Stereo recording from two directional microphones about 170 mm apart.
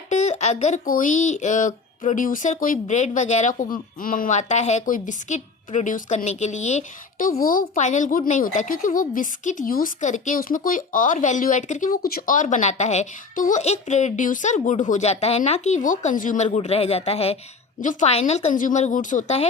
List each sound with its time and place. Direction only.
0.1 s a woman's voice: 45° left (ahead or behind)